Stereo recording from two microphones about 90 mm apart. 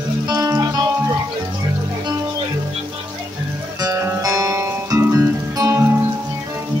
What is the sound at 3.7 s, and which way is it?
Music, 45° right (ahead or behind).